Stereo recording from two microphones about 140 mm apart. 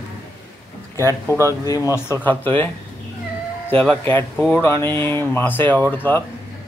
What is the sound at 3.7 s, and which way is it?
Speech, 10° left (ahead or behind).